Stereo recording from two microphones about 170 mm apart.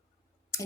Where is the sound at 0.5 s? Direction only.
15° left (ahead or behind).